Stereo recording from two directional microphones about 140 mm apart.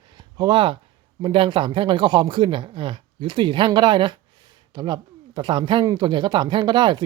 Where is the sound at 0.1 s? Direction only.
30° right (ahead or behind).